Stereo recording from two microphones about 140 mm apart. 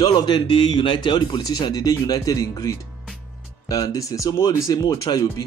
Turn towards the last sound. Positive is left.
turn(degrees=25)  # may be behind; listen again after turning